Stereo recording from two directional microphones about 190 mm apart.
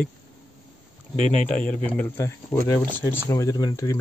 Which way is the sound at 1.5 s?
5° left (ahead or behind).